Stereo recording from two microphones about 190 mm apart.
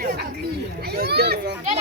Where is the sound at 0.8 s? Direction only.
55° right (ahead or behind).